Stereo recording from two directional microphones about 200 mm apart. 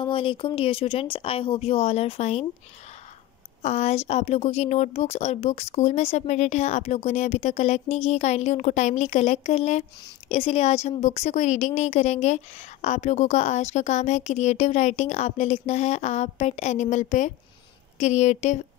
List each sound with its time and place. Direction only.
0.0 s speech: 25° left (ahead or behind)
3.6 s speech: 35° left (ahead or behind)